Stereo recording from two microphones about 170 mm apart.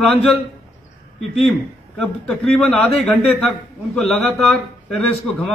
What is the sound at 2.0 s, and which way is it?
A man's voice, 5° left (ahead or behind).